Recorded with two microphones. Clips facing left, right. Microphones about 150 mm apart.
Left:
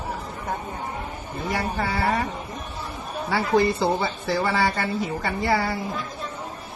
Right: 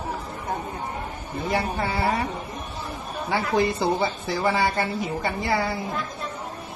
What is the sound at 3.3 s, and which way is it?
Speech, 20° right (ahead or behind).